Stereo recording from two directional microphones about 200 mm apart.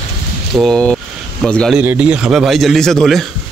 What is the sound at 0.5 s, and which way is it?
A man's voice, 5° left (ahead or behind).